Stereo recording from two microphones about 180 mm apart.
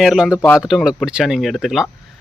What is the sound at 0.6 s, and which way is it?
Speech, 5° right (ahead or behind).